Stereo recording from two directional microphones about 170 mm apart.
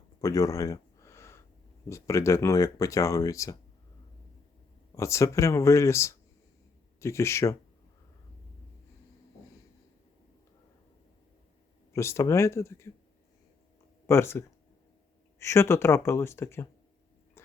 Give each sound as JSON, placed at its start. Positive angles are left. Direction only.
{"t": 0.2, "sound": "a sound", "side_deg": 20}
{"t": 1.9, "sound": "speech", "side_deg": 15}
{"t": 4.9, "sound": "speech", "side_deg": 15}
{"t": 11.9, "sound": "speech", "side_deg": 15}
{"t": 14.1, "sound": "speech", "side_deg": 15}